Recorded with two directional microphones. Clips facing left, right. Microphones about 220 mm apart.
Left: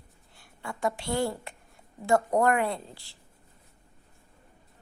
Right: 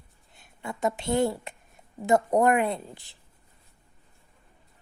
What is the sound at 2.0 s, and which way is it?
A woman's voice, 20° right (ahead or behind).